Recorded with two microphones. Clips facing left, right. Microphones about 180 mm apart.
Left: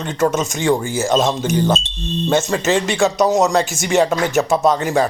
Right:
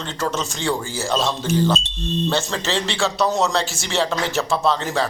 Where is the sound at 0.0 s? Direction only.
15° left (ahead or behind).